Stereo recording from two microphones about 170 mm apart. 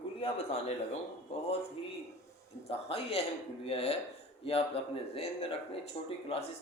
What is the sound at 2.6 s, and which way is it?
Speech, 35° left (ahead or behind).